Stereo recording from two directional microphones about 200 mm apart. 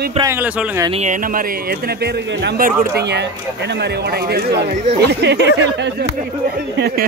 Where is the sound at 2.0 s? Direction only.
50° right (ahead or behind).